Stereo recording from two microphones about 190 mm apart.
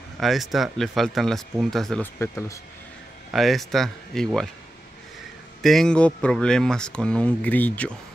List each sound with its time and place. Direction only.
0.2 s speech: centre (ahead or behind)
2.1 s speech: 15° left (ahead or behind)
3.3 s speech: centre (ahead or behind)
5.6 s speech: centre (ahead or behind)